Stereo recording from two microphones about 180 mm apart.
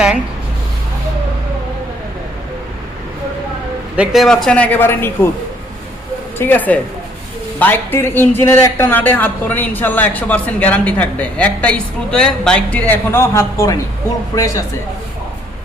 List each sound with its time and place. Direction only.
3.9 s speech: 5° right (ahead or behind); by 5.3 s 10° left (ahead or behind)
6.4 s speech: 10° left (ahead or behind)